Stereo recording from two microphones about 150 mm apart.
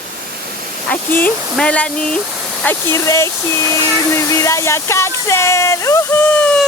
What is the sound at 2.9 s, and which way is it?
Speech, 20° left (ahead or behind).